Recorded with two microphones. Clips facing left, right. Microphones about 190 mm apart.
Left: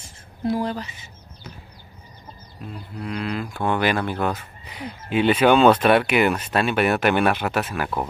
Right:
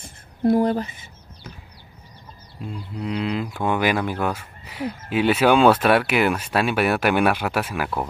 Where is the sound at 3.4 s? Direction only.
10° right (ahead or behind).